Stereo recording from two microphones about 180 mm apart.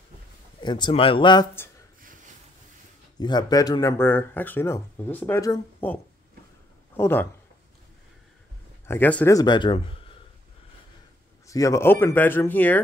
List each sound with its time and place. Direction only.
0.6 s speech: 25° left (ahead or behind)
2.0 s a sound: 50° right (ahead or behind)
3.2 s speech: 25° left (ahead or behind)
7.0 s speech: 10° left (ahead or behind)
8.8 s speech: 10° left (ahead or behind); by 10.1 s 30° left (ahead or behind)
11.4 s speech: 15° left (ahead or behind)